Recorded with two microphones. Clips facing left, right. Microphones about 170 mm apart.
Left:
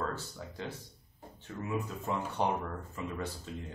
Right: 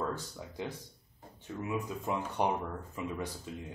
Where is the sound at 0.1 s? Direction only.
15° right (ahead or behind).